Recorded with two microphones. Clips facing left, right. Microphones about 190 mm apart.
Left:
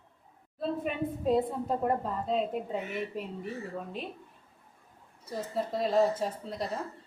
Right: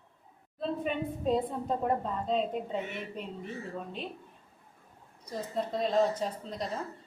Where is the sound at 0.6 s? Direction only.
5° left (ahead or behind).